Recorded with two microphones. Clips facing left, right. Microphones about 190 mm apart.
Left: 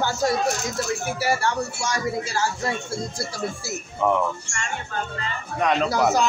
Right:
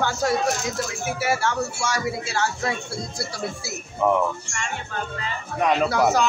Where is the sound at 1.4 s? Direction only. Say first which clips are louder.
Even; 75° right (ahead or behind).